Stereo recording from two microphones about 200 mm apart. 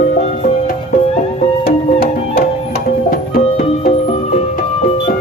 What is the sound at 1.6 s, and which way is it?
Music, 50° left (ahead or behind).